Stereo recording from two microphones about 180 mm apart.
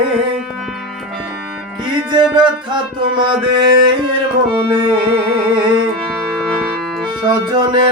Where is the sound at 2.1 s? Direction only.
25° right (ahead or behind).